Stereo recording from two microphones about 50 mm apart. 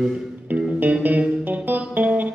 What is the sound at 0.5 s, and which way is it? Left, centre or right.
Music, right.